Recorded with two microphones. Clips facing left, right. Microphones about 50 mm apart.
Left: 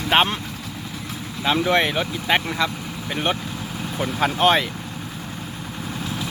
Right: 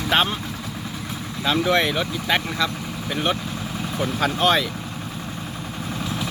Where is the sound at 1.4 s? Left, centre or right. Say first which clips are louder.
Left 1 dB; left.